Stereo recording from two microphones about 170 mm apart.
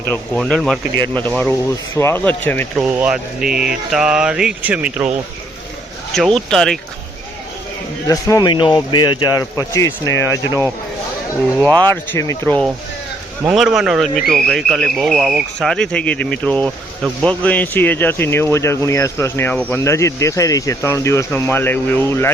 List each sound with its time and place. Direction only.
0.1 s speech: 5° left (ahead or behind)
2.0 s a man's voice: 15° left (ahead or behind)
2.7 s speech: 10° right (ahead or behind)
3.4 s speech: 60° right (ahead or behind)
3.7 s speech: 5° right (ahead or behind)
6.1 s speech: centre (ahead or behind)
8.0 s a man's voice: 20° left (ahead or behind)
11.6 s speech: 25° right (ahead or behind)
11.9 s a man's voice: 15° left (ahead or behind)
13.4 s a man's voice: 5° right (ahead or behind); by 22.3 s 15° left (ahead or behind)